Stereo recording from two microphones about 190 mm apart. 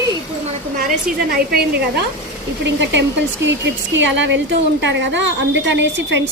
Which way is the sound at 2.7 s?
70° right (ahead or behind).